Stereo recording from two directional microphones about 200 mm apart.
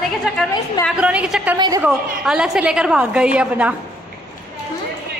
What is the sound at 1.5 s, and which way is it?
Speech, 20° right (ahead or behind).